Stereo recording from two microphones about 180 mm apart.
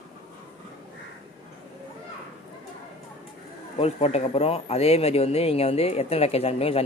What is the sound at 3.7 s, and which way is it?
Speech, 35° left (ahead or behind).